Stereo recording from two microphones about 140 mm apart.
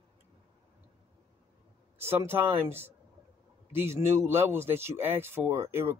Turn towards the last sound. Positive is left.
turn(degrees=-20)  # may be behind; listen again after turning